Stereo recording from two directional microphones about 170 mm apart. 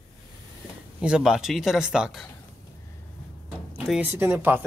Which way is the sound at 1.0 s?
5° right (ahead or behind).